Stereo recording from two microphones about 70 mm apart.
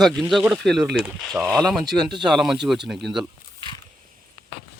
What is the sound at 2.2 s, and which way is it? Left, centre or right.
Speech, centre.